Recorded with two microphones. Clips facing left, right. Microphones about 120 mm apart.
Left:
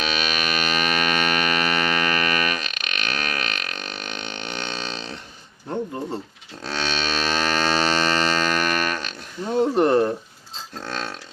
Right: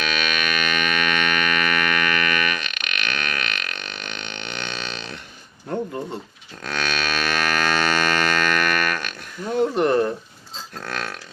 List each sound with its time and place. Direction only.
0.0 s hum: 30° left (ahead or behind)
6.6 s a sound: 30° left (ahead or behind)
10.8 s dog: 25° left (ahead or behind)